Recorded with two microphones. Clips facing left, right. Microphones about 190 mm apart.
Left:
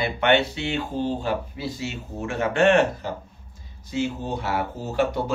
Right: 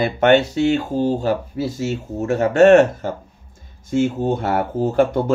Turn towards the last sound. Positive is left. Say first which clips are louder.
# right 7 dB
turn(degrees=-50)  # may be behind; listen again after turning